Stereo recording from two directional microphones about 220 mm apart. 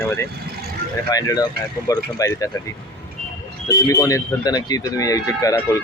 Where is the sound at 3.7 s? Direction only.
15° left (ahead or behind).